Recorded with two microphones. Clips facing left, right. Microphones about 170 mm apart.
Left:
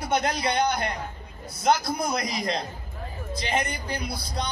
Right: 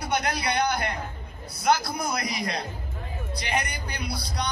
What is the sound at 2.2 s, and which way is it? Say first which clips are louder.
A man's voice: left 2 dB; 25° left (ahead or behind).